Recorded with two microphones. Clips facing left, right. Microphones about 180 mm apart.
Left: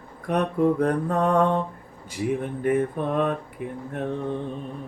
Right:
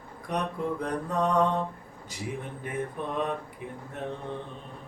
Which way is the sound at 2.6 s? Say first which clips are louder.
Left 11 dB; 55° left (ahead or behind).